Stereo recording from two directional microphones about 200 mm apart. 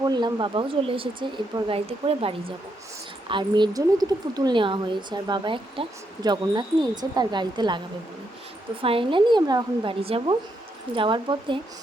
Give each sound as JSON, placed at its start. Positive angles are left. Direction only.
{"t": 0.0, "sound": "speech", "side_deg": -20}
{"t": 8.8, "sound": "speech", "side_deg": -25}